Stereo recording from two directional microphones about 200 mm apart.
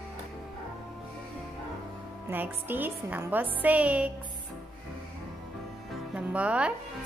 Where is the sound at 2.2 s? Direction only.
10° right (ahead or behind).